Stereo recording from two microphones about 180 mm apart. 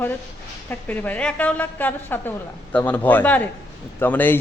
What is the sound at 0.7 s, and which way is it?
A man's voice, 10° left (ahead or behind).